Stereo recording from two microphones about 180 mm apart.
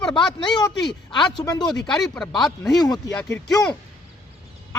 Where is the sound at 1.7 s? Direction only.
5° left (ahead or behind).